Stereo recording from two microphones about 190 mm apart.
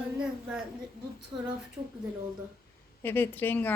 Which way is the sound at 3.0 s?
10° left (ahead or behind).